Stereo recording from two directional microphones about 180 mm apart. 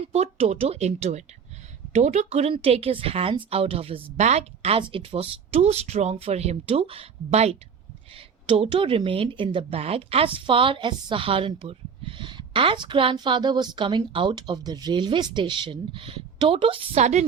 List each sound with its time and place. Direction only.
0.1 s speech: 35° right (ahead or behind)